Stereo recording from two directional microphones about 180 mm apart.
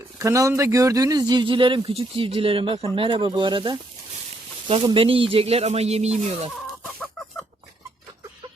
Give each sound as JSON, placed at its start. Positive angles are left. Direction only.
{"t": 0.2, "sound": "a man's voice", "side_deg": -15}